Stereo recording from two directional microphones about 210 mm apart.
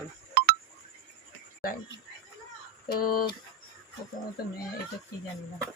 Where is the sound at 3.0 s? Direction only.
45° left (ahead or behind).